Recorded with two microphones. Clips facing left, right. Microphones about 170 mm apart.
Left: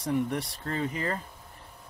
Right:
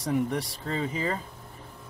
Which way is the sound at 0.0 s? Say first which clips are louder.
Right 1 dB; centre (ahead or behind).